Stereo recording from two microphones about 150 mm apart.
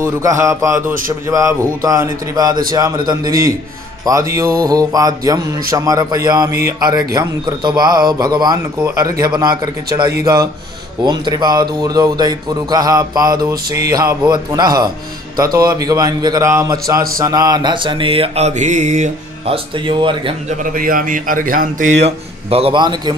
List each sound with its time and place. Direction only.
0.0 s a man's voice: 20° right (ahead or behind)
4.0 s a man's voice: 20° right (ahead or behind)
20.4 s speech: 65° right (ahead or behind); by 23.1 s 30° right (ahead or behind)